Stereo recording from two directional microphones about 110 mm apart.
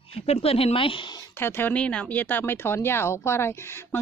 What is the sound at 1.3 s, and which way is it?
Speech, 20° left (ahead or behind).